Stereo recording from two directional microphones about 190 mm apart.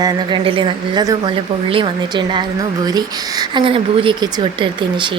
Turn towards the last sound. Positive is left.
turn(degrees=-25)  # may be behind; listen again after turning